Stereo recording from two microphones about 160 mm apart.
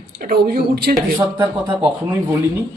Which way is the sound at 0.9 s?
25° right (ahead or behind).